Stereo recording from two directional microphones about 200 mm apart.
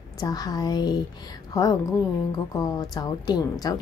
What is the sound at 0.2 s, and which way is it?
A woman's voice, 20° left (ahead or behind).